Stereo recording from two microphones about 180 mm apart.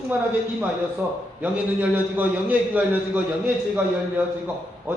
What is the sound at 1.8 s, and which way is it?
A man's voice, 10° right (ahead or behind).